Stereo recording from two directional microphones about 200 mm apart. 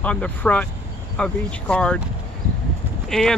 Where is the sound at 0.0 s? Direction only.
5° left (ahead or behind).